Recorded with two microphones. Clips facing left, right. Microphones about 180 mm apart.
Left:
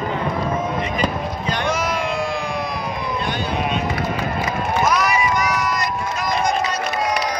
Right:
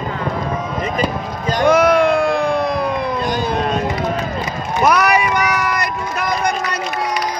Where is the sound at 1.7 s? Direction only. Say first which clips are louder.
Right 13 dB; 60° right (ahead or behind).